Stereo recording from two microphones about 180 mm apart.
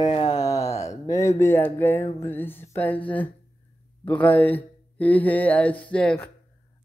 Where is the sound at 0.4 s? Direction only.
20° left (ahead or behind).